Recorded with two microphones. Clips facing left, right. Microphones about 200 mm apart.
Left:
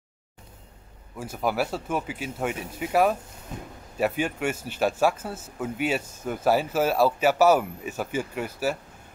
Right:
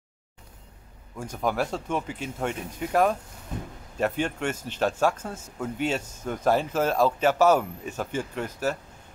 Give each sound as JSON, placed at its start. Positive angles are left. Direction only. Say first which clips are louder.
{"t": 1.1, "sound": "speech", "louder": "left 1 dB", "side_deg": 5}